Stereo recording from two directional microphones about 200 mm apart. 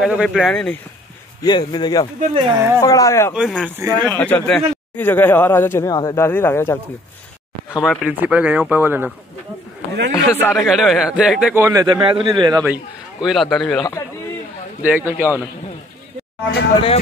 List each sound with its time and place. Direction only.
0.0 s speech: 5° right (ahead or behind)
1.4 s a man's voice: 20° left (ahead or behind)
2.1 s a man's voice: 25° right (ahead or behind)
2.8 s speech: 15° left (ahead or behind)
3.3 s speech: 5° right (ahead or behind)
4.0 s speech: 10° left (ahead or behind)
7.8 s speech: centre (ahead or behind)
10.1 s speech: 10° left (ahead or behind)
10.5 s speech: centre (ahead or behind)
11.6 s a man's voice: 20° right (ahead or behind)
12.6 s speech: 5° right (ahead or behind)
14.8 s speech: 10° right (ahead or behind)